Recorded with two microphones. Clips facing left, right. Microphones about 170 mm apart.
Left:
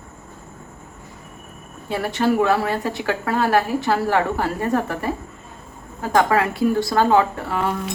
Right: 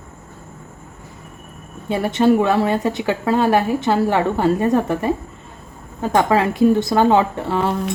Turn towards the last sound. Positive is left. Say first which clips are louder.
# right 2 dB
turn(degrees=-25)  # may be behind; listen again after turning